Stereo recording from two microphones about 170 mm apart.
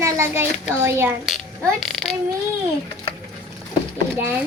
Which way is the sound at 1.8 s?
Centre (ahead or behind).